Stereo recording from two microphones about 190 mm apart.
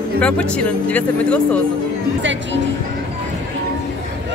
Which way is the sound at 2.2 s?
75° right (ahead or behind).